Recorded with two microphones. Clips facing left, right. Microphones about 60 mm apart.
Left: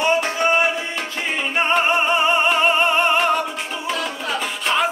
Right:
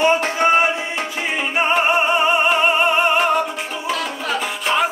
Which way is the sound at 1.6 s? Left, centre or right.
Centre.